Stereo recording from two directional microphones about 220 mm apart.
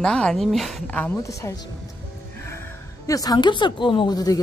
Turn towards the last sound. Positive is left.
turn(degrees=15)  # may be behind; listen again after turning